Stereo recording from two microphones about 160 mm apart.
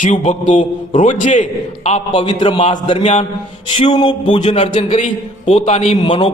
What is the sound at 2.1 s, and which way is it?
A man's voice, 30° left (ahead or behind).